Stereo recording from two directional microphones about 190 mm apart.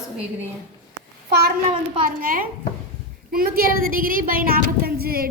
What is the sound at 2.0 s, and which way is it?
A woman's voice, 50° right (ahead or behind).